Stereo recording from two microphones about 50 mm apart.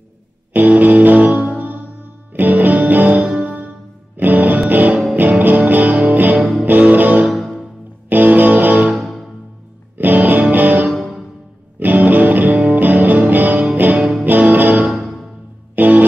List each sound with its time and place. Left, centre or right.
0.5 s music: right
7.3 s music: centre
8.1 s music: right
8.9 s music: centre
9.9 s music: right
14.9 s music: centre
15.7 s music: right